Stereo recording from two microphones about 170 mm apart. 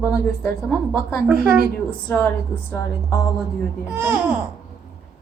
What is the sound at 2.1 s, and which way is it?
Speech, 10° left (ahead or behind).